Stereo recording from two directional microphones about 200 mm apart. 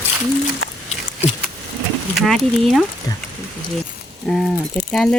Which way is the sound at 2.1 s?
Centre (ahead or behind).